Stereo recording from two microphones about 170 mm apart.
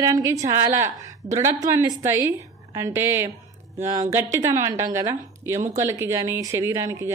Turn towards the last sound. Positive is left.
turn(degrees=-15)  # may be behind; listen again after turning